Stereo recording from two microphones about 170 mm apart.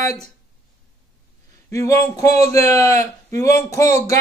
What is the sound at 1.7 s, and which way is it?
A man's voice, 20° left (ahead or behind).